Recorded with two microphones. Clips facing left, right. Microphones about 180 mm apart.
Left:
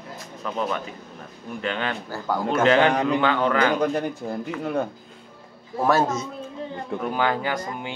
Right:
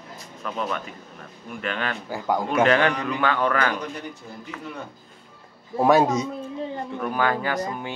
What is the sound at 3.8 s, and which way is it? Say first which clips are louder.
A man's voice: left 10 dB; 55° left (ahead or behind).